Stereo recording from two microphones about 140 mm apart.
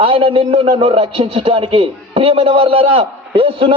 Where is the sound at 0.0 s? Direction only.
40° right (ahead or behind).